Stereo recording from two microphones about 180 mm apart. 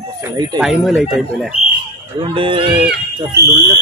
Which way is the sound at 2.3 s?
30° right (ahead or behind).